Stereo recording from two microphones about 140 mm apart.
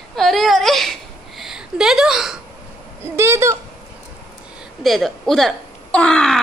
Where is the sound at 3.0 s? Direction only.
20° right (ahead or behind).